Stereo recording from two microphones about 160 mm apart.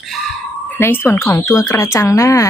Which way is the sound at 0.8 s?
15° left (ahead or behind).